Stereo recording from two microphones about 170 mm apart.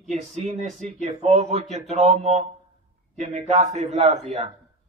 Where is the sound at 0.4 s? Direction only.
40° right (ahead or behind).